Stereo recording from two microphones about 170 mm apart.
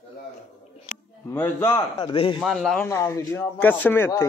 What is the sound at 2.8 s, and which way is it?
A man's voice, 15° left (ahead or behind).